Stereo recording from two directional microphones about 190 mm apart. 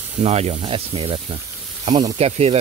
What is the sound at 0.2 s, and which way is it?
Speech, 35° right (ahead or behind).